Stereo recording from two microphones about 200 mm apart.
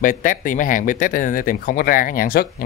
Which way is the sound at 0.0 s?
45° left (ahead or behind).